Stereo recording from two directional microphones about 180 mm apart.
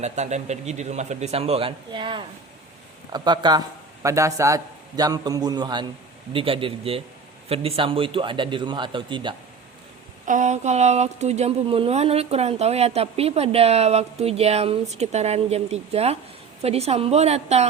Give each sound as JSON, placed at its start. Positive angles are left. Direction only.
{"t": 0.0, "sound": "a man's voice", "side_deg": -40}
{"t": 10.2, "sound": "speech", "side_deg": -45}